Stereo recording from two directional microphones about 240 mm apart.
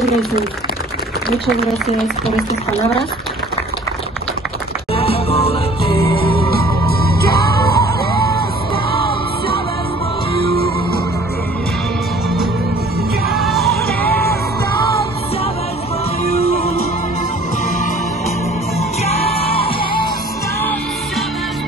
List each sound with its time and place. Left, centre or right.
4.9 s music: left
6.5 s music: left
13.3 s music: centre